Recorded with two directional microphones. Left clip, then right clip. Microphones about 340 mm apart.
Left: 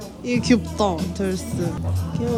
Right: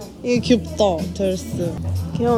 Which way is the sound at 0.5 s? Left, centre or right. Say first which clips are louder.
Right 3 dB; centre.